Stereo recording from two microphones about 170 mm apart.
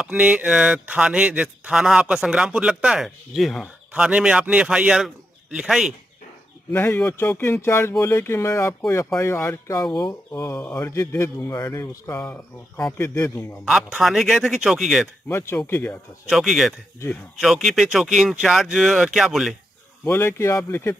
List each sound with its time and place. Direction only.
0.0 s speech: 5° right (ahead or behind)
6.7 s speech: 15° left (ahead or behind)
13.7 s speech: 5° right (ahead or behind)
15.2 s speech: 15° left (ahead or behind)
16.3 s speech: centre (ahead or behind)
20.1 s speech: 15° left (ahead or behind)